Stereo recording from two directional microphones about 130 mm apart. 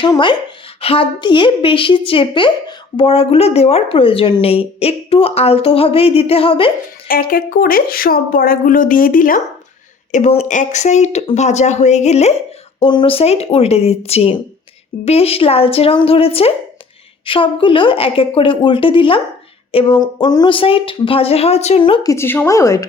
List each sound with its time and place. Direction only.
0.8 s a woman's voice: 45° left (ahead or behind)
7.1 s a woman's voice: 90° left
10.1 s speech: 65° left (ahead or behind)
12.8 s a woman's voice: 40° left (ahead or behind)
22.0 s a woman's voice: 20° left (ahead or behind)